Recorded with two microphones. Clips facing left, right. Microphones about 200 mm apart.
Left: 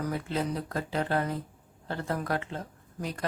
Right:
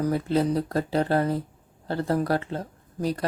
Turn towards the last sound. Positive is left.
turn(degrees=-35)  # may be behind; listen again after turning